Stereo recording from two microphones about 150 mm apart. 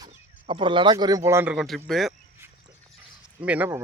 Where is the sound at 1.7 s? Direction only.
Centre (ahead or behind).